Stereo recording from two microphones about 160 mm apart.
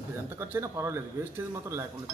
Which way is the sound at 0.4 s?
15° right (ahead or behind).